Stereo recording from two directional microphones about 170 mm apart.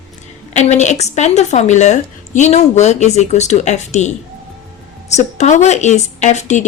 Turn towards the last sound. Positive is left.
turn(degrees=45)  # may be behind; listen again after turning